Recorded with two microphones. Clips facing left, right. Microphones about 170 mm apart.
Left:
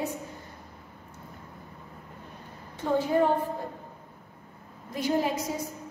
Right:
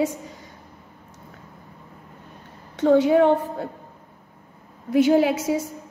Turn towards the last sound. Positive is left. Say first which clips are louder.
# right 8 dB
turn(degrees=-80)